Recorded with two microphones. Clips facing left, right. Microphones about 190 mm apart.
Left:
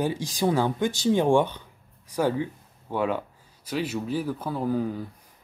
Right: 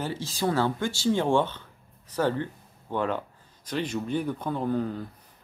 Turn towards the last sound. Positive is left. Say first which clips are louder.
# left 1 dB
turn(degrees=10)  # may be behind; listen again after turning